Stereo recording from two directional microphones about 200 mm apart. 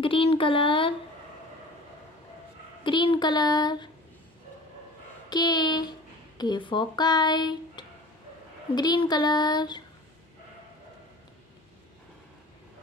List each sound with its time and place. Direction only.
0.0 s speech: 30° left (ahead or behind)
2.8 s child singing: 25° left (ahead or behind)
5.3 s speech: 20° left (ahead or behind)
8.7 s child singing: 20° left (ahead or behind)